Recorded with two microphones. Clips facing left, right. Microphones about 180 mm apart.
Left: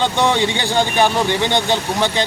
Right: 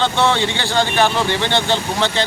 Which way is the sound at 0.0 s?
15° left (ahead or behind).